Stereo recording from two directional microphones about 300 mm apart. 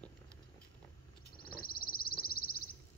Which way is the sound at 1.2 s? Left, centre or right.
Left.